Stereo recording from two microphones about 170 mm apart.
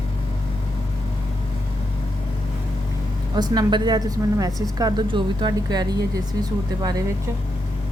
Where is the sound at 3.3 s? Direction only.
25° right (ahead or behind).